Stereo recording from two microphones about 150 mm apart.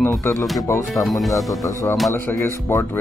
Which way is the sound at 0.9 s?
Centre (ahead or behind).